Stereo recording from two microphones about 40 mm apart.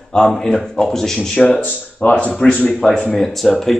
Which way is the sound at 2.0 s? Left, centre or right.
Left.